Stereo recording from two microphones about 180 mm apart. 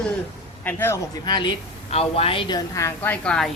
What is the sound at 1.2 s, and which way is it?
A woman's voice, 25° left (ahead or behind).